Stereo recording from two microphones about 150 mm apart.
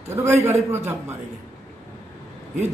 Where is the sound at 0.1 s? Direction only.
20° right (ahead or behind).